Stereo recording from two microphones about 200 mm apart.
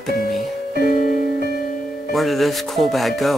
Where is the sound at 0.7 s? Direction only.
50° left (ahead or behind).